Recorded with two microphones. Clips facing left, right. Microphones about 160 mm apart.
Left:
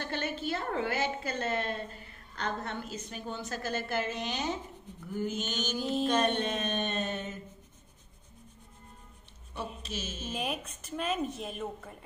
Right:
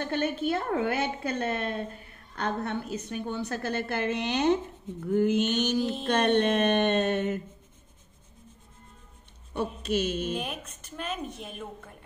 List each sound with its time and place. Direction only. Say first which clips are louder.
0.0 s a woman's voice: right 6 dB; 55° right (ahead or behind)
9.8 s a woman's voice: right 12 dB; 65° right (ahead or behind)
10.3 s speech: right 1 dB; 5° left (ahead or behind)